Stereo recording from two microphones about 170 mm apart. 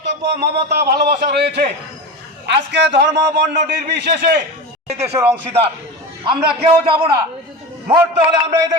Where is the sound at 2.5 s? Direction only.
90° right.